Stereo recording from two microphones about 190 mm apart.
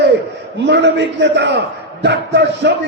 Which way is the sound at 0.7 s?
65° right (ahead or behind).